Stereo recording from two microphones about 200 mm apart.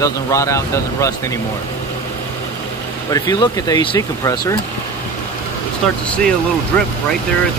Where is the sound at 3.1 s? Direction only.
20° left (ahead or behind).